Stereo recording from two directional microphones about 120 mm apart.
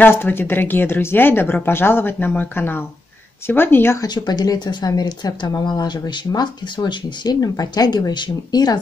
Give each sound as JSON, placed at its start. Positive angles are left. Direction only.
{"t": 0.0, "sound": "a woman's voice", "side_deg": 20}
{"t": 4.0, "sound": "speech", "side_deg": 35}